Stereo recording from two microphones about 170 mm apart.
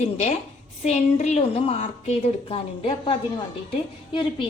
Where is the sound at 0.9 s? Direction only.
40° left (ahead or behind).